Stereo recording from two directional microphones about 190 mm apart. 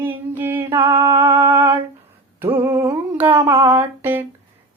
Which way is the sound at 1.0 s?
25° right (ahead or behind).